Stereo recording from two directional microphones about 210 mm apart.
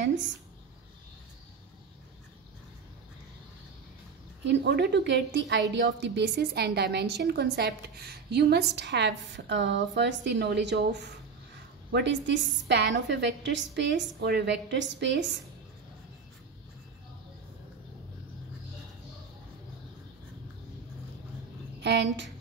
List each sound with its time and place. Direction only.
0.0 s speech: 60° right (ahead or behind)
4.5 s a woman's voice: 55° right (ahead or behind)
21.8 s a woman's voice: 55° right (ahead or behind)